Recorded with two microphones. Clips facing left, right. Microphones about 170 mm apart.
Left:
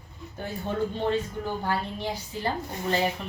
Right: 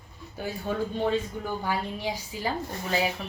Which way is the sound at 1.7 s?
10° right (ahead or behind).